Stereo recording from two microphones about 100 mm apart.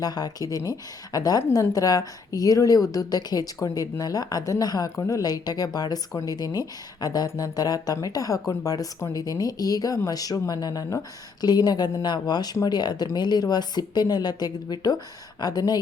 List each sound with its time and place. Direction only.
0.0 s speech: 40° left (ahead or behind)